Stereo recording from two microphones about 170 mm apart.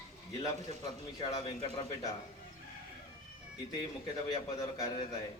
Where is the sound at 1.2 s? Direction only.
25° left (ahead or behind).